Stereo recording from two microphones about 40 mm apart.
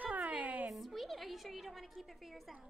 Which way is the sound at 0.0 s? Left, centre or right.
Right.